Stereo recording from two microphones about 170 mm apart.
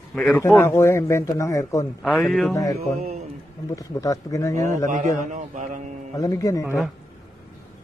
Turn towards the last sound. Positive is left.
turn(degrees=20)  # may be behind; listen again after turning